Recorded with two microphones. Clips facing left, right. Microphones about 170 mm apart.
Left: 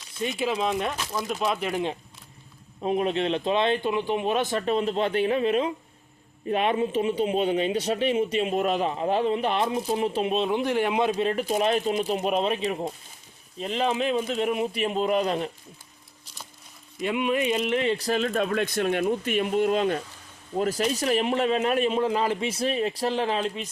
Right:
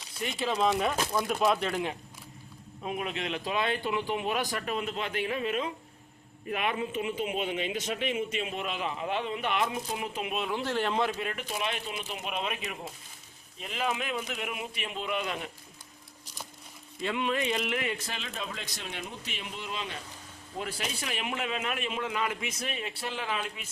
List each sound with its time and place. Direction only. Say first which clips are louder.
0.2 s speech: left 3 dB; 15° left (ahead or behind)
1.7 s speech: left 4 dB; 20° left (ahead or behind)
2.8 s a man's voice: left 9 dB; 35° left (ahead or behind)
10.6 s speech: left 5 dB; 15° left (ahead or behind)
11.2 s a man's voice: left 10 dB; 35° left (ahead or behind)
17.0 s a man's voice: left 5 dB; 15° left (ahead or behind); by 23.6 s 35° left (ahead or behind)